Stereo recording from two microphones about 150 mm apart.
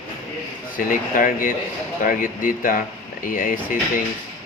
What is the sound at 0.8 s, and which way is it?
Speech, 60° left (ahead or behind).